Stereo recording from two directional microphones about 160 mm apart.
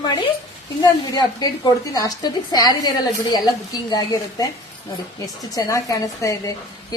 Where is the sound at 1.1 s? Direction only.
25° left (ahead or behind).